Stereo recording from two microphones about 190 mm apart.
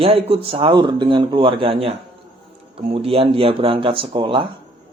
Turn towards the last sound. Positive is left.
turn(degrees=-25)  # may be behind; listen again after turning